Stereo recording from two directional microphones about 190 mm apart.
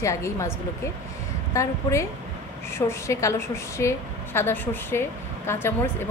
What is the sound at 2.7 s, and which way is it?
A woman's voice, 15° left (ahead or behind).